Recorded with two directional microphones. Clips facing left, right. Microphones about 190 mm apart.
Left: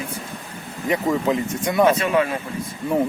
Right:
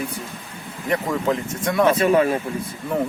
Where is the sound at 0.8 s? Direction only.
5° left (ahead or behind).